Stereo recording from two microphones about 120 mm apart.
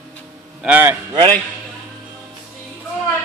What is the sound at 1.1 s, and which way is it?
Speech, 35° right (ahead or behind).